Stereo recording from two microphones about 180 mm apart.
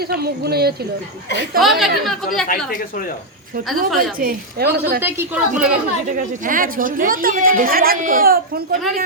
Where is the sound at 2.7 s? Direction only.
50° left (ahead or behind).